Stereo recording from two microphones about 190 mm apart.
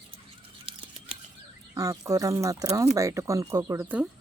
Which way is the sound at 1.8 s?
20° right (ahead or behind).